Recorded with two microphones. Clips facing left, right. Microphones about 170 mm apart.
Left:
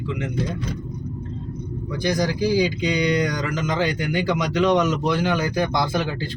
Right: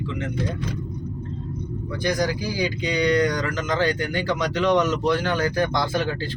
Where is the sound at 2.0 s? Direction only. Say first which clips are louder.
Left 3 dB; 15° left (ahead or behind).